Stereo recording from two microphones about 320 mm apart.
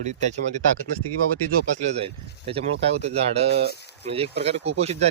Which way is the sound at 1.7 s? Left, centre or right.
Centre.